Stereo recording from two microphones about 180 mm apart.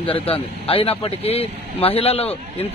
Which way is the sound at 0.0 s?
30° left (ahead or behind).